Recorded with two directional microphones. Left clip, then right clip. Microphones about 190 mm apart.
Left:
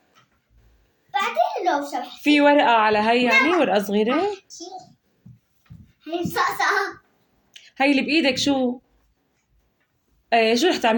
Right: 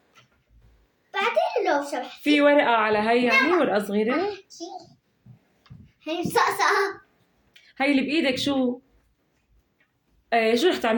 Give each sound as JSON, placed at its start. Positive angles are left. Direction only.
{"t": 1.1, "sound": "a sound", "side_deg": -15}
{"t": 2.2, "sound": "speech", "side_deg": 5}
{"t": 6.0, "sound": "a child's voice", "side_deg": -20}
{"t": 7.5, "sound": "speech", "side_deg": 15}
{"t": 10.2, "sound": "speech", "side_deg": 10}